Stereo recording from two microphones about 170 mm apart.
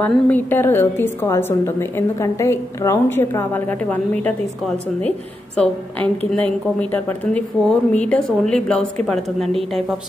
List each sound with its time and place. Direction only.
0.0 s a woman's voice: 10° left (ahead or behind)
5.6 s a woman's voice: 5° left (ahead or behind)